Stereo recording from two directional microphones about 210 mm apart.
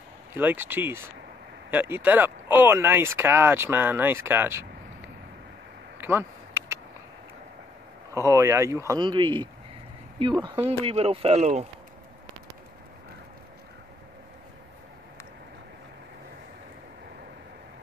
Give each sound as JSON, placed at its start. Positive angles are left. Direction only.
{"t": 0.3, "sound": "speech", "side_deg": -10}
{"t": 5.9, "sound": "a sound", "side_deg": -10}
{"t": 8.1, "sound": "speech", "side_deg": -15}